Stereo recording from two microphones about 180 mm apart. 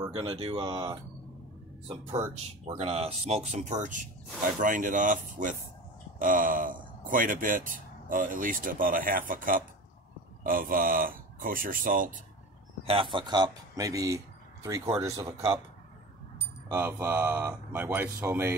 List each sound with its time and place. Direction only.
0.0 s speech: 25° right (ahead or behind); by 12.2 s 50° right (ahead or behind)
12.8 s speech: 30° right (ahead or behind); by 18.5 s 10° right (ahead or behind)